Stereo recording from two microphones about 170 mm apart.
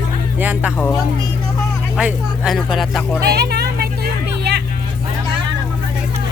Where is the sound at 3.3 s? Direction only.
70° right (ahead or behind).